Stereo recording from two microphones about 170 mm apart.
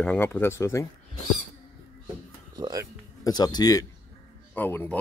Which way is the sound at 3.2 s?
25° left (ahead or behind).